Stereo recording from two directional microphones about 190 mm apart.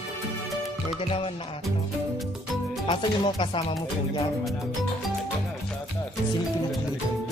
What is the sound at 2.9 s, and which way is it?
Speech, 30° left (ahead or behind).